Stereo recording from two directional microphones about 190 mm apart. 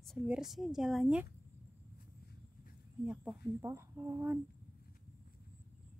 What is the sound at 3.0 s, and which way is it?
Speech, 5° right (ahead or behind).